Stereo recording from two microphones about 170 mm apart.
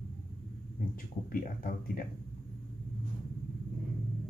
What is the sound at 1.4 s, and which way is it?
Speech, 55° left (ahead or behind).